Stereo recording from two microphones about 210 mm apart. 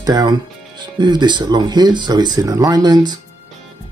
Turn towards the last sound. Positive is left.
turn(degrees=-20)  # may be behind; listen again after turning